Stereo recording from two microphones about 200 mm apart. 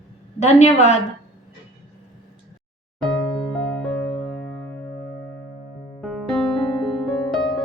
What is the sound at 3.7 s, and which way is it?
Music, centre (ahead or behind).